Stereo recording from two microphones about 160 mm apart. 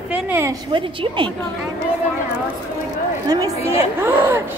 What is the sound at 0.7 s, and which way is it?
Speech, 30° right (ahead or behind).